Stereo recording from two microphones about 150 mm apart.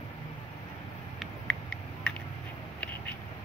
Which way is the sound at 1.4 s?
5° left (ahead or behind).